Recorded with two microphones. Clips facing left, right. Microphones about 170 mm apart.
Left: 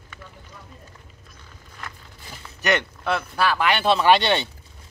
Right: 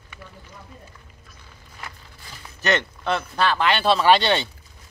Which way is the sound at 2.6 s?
15° left (ahead or behind).